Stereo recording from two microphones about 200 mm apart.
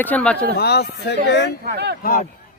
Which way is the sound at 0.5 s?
55° left (ahead or behind).